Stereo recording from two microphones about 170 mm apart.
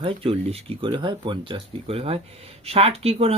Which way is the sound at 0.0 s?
35° right (ahead or behind).